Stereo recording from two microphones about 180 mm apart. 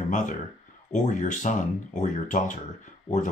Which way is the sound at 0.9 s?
45° left (ahead or behind).